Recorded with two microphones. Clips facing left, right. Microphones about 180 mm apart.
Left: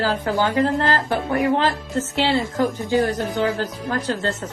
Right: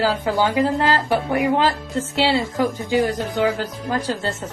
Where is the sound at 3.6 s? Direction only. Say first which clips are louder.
Even; 10° right (ahead or behind).